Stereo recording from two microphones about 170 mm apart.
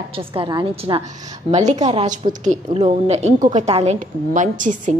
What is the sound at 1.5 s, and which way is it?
A woman's voice, 40° right (ahead or behind).